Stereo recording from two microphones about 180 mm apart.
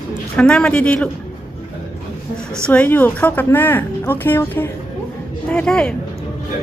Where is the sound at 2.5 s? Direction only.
5° left (ahead or behind).